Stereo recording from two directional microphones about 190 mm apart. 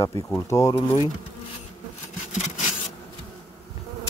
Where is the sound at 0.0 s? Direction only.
15° left (ahead or behind).